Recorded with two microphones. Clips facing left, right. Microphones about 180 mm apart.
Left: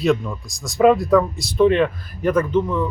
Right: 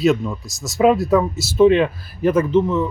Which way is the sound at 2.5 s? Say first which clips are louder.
Right 3 dB; 25° right (ahead or behind).